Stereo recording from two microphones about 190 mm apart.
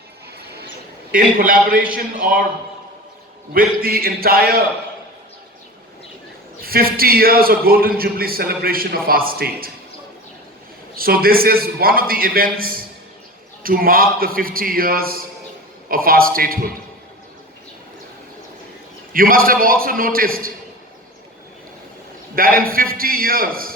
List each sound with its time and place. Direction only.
1.1 s a man's voice: 45° right (ahead or behind)
3.5 s a man's voice: 50° right (ahead or behind)
6.6 s a man's voice: 50° right (ahead or behind)
10.9 s a man's voice: 50° right (ahead or behind)
19.1 s a man's voice: 50° right (ahead or behind)
22.4 s a man's voice: 50° right (ahead or behind)